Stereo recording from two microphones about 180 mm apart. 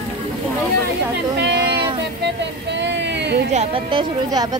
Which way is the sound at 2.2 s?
80° right.